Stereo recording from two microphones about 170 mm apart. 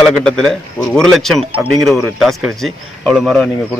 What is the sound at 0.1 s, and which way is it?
Speech, 5° left (ahead or behind).